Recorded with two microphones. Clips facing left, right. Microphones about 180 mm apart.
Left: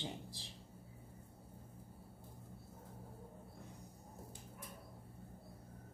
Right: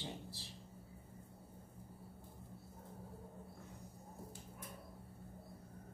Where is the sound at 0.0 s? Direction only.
15° left (ahead or behind).